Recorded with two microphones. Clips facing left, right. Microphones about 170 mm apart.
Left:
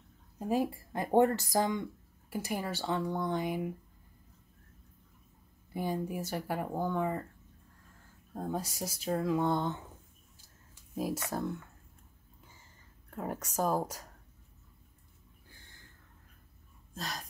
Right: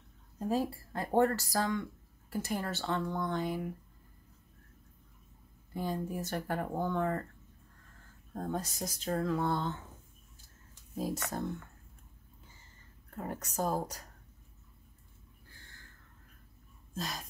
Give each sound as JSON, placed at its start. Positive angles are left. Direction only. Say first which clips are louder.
{"t": 0.4, "sound": "speech", "louder": "left 1 dB", "side_deg": 15}
{"t": 5.7, "sound": "speech", "louder": "left 1 dB", "side_deg": 10}
{"t": 8.3, "sound": "speech", "louder": "even", "side_deg": 10}
{"t": 11.0, "sound": "speech", "louder": "left 1 dB", "side_deg": 10}
{"t": 13.1, "sound": "speech", "louder": "left 2 dB", "side_deg": 10}
{"t": 16.9, "sound": "speech", "louder": "right 1 dB", "side_deg": 0}